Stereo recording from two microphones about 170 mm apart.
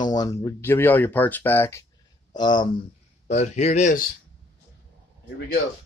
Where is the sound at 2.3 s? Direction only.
25° left (ahead or behind).